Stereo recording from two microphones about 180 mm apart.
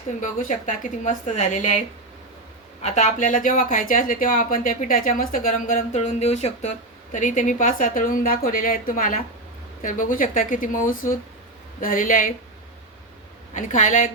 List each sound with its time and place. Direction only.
0.1 s speech: 45° left (ahead or behind)
2.8 s speech: 40° left (ahead or behind)
13.5 s speech: 45° left (ahead or behind)